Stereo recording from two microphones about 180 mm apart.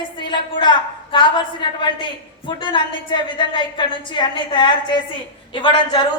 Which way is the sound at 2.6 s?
25° left (ahead or behind).